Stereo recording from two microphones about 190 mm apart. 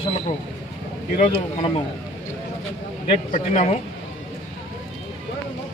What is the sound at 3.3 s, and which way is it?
Speech, 40° left (ahead or behind).